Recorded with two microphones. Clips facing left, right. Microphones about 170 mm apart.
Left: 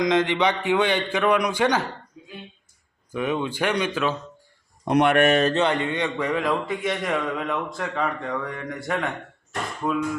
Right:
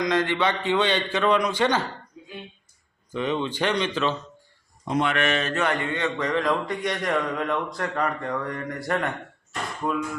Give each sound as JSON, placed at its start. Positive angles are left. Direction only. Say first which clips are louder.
{"t": 0.0, "sound": "a man's voice", "louder": "left 3 dB", "side_deg": 20}
{"t": 3.1, "sound": "a man's voice", "louder": "left 1 dB", "side_deg": 10}
{"t": 4.9, "sound": "speech", "louder": "left 6 dB", "side_deg": 65}
{"t": 5.5, "sound": "a man's voice", "louder": "left 3 dB", "side_deg": 20}